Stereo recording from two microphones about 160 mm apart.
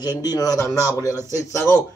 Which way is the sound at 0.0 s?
25° left (ahead or behind).